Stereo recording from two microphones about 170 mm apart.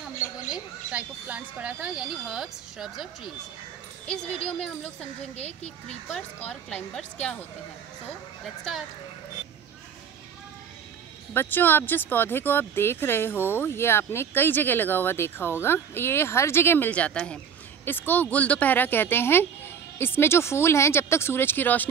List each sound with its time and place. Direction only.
0.5 s speech: 10° right (ahead or behind)
4.5 s speech: centre (ahead or behind)
5.3 s speech: 40° left (ahead or behind)
6.1 s speech: 5° left (ahead or behind)
11.3 s speech: 10° left (ahead or behind)